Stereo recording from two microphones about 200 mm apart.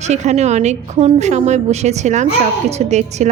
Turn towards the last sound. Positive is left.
turn(degrees=-35)  # may be behind; listen again after turning